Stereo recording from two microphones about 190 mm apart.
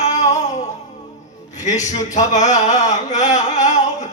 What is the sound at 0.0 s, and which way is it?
Music, 40° left (ahead or behind).